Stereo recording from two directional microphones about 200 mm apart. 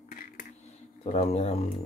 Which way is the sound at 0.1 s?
45° left (ahead or behind).